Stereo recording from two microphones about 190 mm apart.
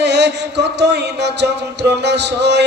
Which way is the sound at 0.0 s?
65° right (ahead or behind).